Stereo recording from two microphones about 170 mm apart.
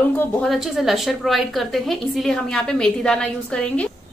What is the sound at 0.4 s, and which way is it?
A woman's voice, centre (ahead or behind).